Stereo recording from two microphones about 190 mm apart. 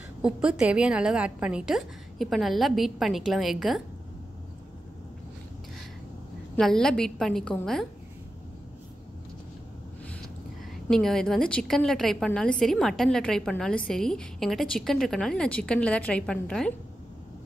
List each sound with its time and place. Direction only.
0.2 s a woman's voice: 5° right (ahead or behind)
6.5 s a woman's voice: 5° left (ahead or behind)
10.9 s a woman's voice: centre (ahead or behind)